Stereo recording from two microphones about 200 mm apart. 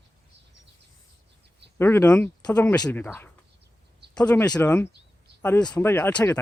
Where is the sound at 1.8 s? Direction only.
10° left (ahead or behind).